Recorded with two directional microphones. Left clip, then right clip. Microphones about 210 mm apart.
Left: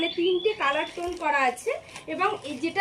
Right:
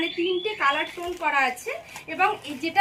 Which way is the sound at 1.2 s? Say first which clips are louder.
Right 1 dB; 30° right (ahead or behind).